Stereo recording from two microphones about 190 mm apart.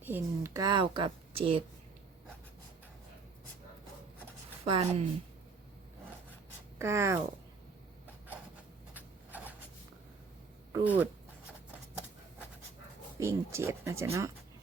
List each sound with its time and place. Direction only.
0.0 s a woman's voice: 10° right (ahead or behind); by 1.6 s 30° right (ahead or behind)
4.6 s a woman's voice: 30° right (ahead or behind)
6.7 s speech: 15° right (ahead or behind)
9.0 s a sound: 10° right (ahead or behind)
10.7 s speech: 10° right (ahead or behind)
13.1 s speech: 15° right (ahead or behind)